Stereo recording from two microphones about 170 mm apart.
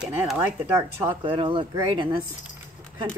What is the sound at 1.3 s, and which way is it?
Speech, 30° right (ahead or behind).